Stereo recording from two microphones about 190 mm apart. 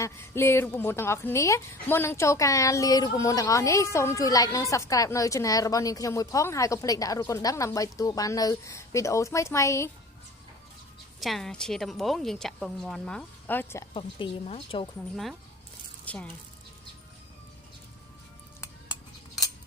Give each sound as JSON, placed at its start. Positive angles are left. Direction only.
{"t": 0.0, "sound": "a woman's voice", "side_deg": 15}
{"t": 11.2, "sound": "a woman's voice", "side_deg": 0}
{"t": 13.9, "sound": "speech", "side_deg": 30}
{"t": 15.1, "sound": "a woman's voice", "side_deg": 0}